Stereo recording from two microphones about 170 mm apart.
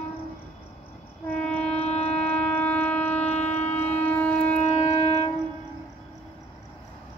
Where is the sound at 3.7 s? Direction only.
10° left (ahead or behind).